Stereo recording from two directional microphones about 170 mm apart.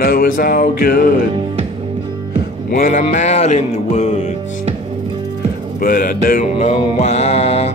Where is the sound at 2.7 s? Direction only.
55° left (ahead or behind).